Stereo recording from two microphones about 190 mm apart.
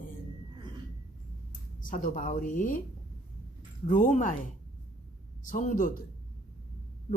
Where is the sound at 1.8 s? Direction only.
45° left (ahead or behind).